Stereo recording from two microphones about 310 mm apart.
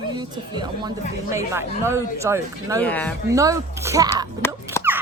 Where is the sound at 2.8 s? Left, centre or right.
Centre.